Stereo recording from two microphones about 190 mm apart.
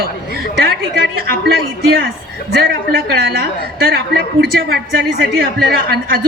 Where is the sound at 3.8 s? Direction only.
55° right (ahead or behind).